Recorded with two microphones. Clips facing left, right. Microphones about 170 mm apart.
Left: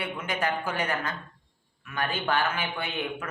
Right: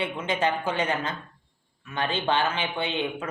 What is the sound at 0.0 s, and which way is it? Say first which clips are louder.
Speech: right 4 dB; 25° right (ahead or behind).